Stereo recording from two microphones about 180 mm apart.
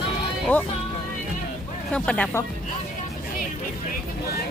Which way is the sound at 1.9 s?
5° left (ahead or behind).